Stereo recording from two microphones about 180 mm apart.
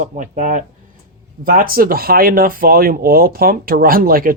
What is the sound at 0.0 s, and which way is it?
Speech, 45° right (ahead or behind).